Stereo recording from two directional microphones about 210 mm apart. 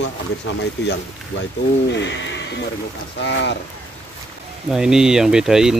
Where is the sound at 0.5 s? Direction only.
65° left (ahead or behind).